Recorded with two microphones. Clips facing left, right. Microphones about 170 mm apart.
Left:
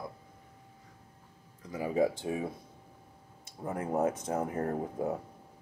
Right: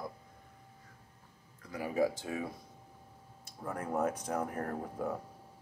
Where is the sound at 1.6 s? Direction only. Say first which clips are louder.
Left 3 dB; 20° left (ahead or behind).